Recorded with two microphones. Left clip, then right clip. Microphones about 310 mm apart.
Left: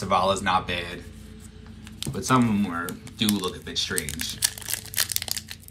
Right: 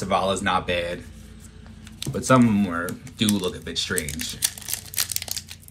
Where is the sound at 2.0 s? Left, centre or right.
Centre.